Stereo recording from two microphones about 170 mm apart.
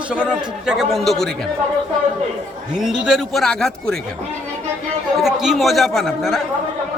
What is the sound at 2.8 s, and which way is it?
Speech, 5° right (ahead or behind).